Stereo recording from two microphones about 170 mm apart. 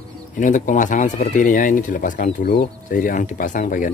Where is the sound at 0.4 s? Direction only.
50° left (ahead or behind).